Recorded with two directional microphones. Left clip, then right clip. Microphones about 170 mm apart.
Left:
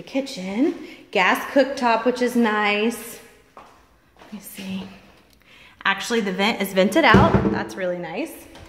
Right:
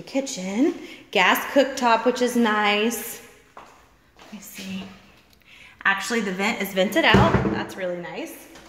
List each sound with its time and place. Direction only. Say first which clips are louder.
0.0 s a woman's voice: even; 5° right (ahead or behind)
5.8 s a woman's voice: left 1 dB; 10° left (ahead or behind)
6.3 s speech: left 5 dB; 25° left (ahead or behind)
8.0 s speech: left 4 dB; 50° left (ahead or behind)